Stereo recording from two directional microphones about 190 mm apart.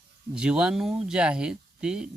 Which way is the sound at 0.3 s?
5° right (ahead or behind).